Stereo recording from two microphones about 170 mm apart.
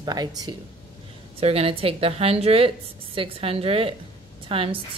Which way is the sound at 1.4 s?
35° right (ahead or behind).